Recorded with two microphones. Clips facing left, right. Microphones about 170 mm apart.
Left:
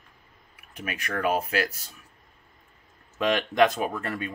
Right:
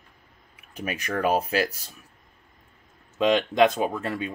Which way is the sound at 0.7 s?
30° right (ahead or behind).